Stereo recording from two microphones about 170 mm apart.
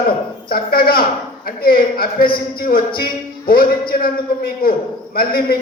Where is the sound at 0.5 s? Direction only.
60° left (ahead or behind).